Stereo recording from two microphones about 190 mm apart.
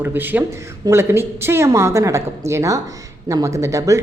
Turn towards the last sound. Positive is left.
turn(degrees=-15)  # may be behind; listen again after turning